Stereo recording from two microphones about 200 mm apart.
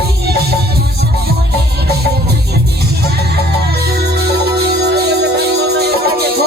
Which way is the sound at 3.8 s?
55° right (ahead or behind).